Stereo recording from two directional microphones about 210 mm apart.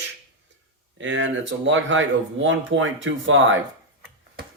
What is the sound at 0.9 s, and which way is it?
Speech, 60° right (ahead or behind).